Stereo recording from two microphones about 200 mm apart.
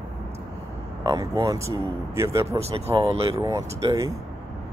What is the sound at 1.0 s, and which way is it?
Speech, 20° right (ahead or behind).